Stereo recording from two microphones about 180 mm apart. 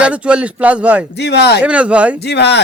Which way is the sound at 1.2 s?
70° left (ahead or behind).